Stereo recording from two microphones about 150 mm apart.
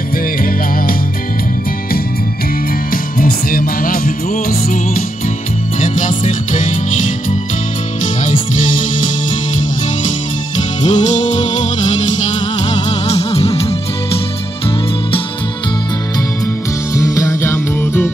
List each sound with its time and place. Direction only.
2.9 s music: 70° left (ahead or behind)
5.8 s music: 55° left (ahead or behind)
8.2 s music: 60° left (ahead or behind)
10.8 s music: 50° left (ahead or behind)
13.1 s music: 45° left (ahead or behind)
16.9 s music: 20° left (ahead or behind)